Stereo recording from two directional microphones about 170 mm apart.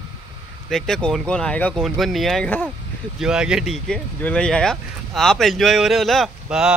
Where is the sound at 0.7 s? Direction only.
5° left (ahead or behind).